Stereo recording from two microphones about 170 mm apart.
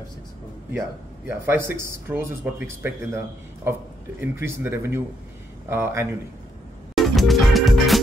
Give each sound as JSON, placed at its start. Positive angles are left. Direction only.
{"t": 0.7, "sound": "speech", "side_deg": -15}
{"t": 4.2, "sound": "speech", "side_deg": -15}
{"t": 7.0, "sound": "music", "side_deg": 0}